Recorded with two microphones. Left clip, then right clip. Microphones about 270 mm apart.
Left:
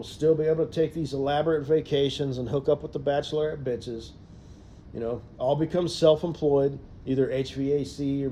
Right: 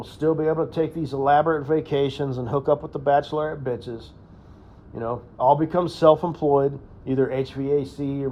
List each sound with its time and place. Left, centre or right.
0.0 s a man's voice: centre